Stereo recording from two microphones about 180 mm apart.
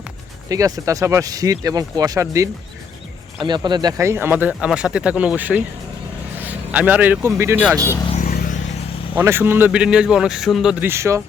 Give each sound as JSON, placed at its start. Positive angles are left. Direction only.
{"t": 0.4, "sound": "speech", "side_deg": -20}
{"t": 7.8, "sound": "speech", "side_deg": 15}
{"t": 8.2, "sound": "vehicle", "side_deg": 50}
{"t": 9.1, "sound": "speech", "side_deg": -10}